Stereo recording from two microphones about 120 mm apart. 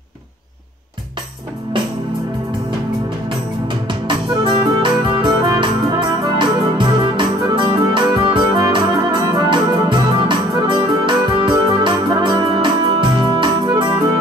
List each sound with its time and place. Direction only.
4.5 s music: 40° right (ahead or behind)